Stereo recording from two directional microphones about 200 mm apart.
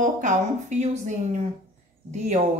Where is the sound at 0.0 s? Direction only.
35° right (ahead or behind).